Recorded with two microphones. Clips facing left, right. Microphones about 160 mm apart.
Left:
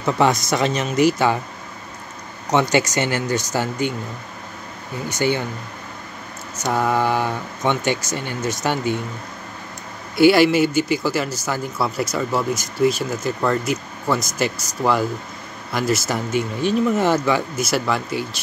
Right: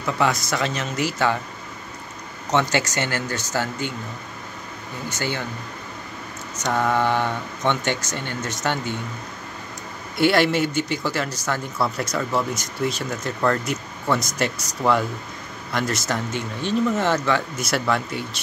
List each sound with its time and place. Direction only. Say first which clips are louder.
0.0 s a man's voice: left 4 dB; 20° left (ahead or behind)
2.5 s speech: left 4 dB; 15° left (ahead or behind)
5.1 s speech: left 8 dB; 15° left (ahead or behind)
6.6 s speech: left 1 dB; 10° left (ahead or behind)
10.1 s speech: left 5 dB; 5° left (ahead or behind)